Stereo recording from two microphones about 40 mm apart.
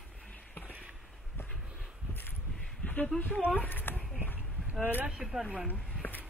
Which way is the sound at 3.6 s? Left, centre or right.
Left.